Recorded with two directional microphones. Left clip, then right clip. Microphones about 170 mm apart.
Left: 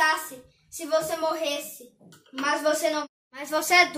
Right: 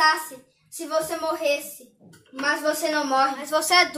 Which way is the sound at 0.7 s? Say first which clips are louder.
Even; centre (ahead or behind).